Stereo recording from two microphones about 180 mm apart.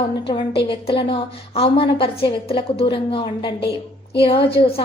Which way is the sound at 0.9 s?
30° left (ahead or behind).